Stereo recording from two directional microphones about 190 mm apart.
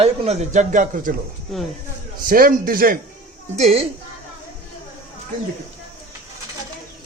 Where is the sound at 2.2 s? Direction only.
50° right (ahead or behind).